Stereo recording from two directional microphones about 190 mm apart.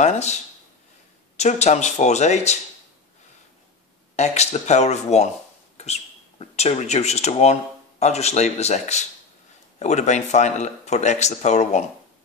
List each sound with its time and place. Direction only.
0.0 s speech: 35° left (ahead or behind)
4.2 s speech: 35° left (ahead or behind)